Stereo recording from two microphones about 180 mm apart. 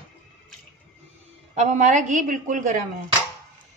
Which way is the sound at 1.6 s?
40° right (ahead or behind).